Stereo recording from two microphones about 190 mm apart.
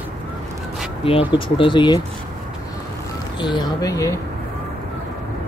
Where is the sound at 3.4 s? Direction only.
25° left (ahead or behind).